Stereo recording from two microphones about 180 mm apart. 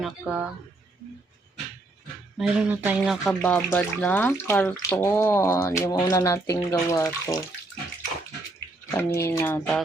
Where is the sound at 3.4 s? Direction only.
10° left (ahead or behind).